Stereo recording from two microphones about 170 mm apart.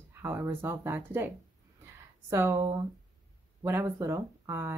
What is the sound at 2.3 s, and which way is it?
Speech, 15° right (ahead or behind).